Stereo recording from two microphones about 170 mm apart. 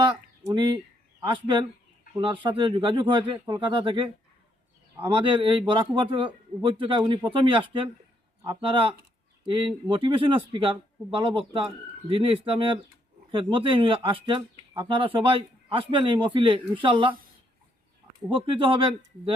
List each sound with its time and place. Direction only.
0.0 s a sound: 30° right (ahead or behind)
1.2 s a man's voice: 30° right (ahead or behind)
18.3 s speech: 30° right (ahead or behind)